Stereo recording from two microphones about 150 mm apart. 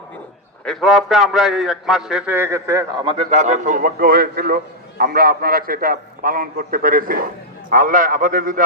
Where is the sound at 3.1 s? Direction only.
45° right (ahead or behind).